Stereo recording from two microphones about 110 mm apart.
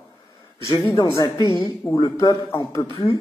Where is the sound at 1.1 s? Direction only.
35° left (ahead or behind).